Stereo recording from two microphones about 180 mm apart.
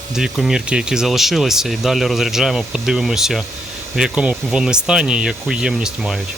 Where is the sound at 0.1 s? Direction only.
Centre (ahead or behind).